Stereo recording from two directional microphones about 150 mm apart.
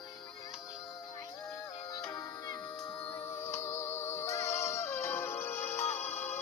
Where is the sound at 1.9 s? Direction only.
25° left (ahead or behind).